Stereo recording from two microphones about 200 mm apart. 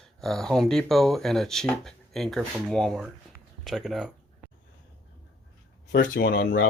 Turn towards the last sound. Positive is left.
turn(degrees=45)  # may be behind; listen again after turning